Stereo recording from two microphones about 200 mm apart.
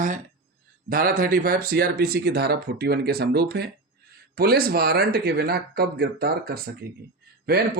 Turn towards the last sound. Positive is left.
turn(degrees=-50)  # may be behind; listen again after turning